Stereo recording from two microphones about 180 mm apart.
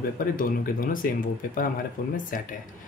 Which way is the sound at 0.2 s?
50° left (ahead or behind).